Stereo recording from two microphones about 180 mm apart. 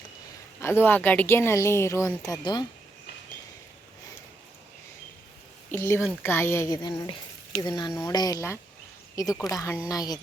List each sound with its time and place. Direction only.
0.6 s speech: 10° left (ahead or behind)
5.7 s speech: 15° left (ahead or behind)